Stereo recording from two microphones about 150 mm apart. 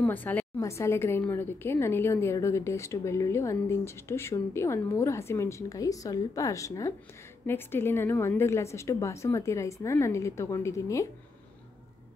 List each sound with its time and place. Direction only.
0.0 s a woman's voice: 10° left (ahead or behind)